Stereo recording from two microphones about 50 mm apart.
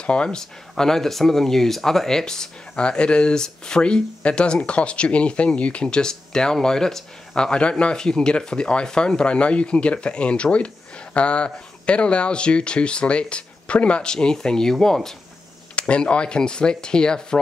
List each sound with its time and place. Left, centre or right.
0.0 s speech: left
0.4 s speech: centre
15.9 s speech: left